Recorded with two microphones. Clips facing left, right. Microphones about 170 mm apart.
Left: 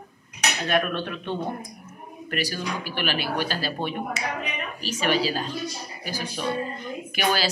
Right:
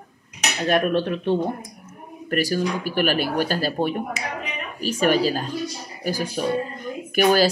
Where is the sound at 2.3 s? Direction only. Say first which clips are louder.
Right 7 dB; 45° right (ahead or behind).